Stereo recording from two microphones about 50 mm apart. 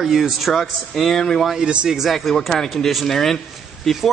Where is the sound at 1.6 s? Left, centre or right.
Right.